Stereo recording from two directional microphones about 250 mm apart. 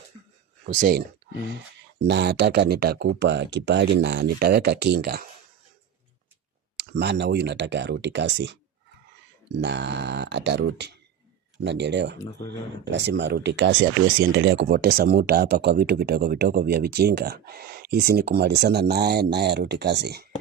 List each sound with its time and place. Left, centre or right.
0.6 s speech: right
2.0 s speech: right
6.7 s speech: right